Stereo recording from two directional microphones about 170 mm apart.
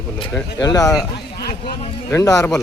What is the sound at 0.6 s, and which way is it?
Speech, 20° left (ahead or behind).